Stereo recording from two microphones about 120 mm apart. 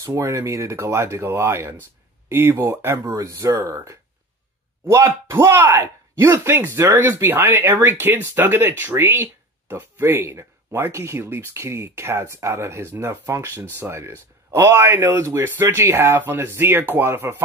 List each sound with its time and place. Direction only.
0.0 s speech: 25° right (ahead or behind)